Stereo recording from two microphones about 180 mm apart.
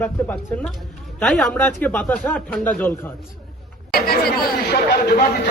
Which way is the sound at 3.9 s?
55° left (ahead or behind).